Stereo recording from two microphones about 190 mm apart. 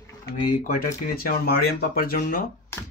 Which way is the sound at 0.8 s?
50° left (ahead or behind).